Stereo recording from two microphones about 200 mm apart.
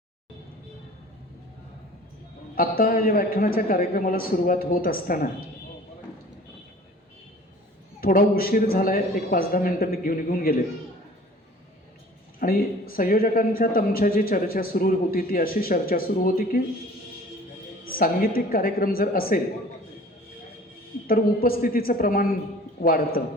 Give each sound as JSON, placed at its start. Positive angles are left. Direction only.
{"t": 2.6, "sound": "a man's voice", "side_deg": 45}
{"t": 8.0, "sound": "a man's voice", "side_deg": 45}
{"t": 12.4, "sound": "a man's voice", "side_deg": 45}
{"t": 17.8, "sound": "a man's voice", "side_deg": 45}
{"t": 21.1, "sound": "a man's voice", "side_deg": 45}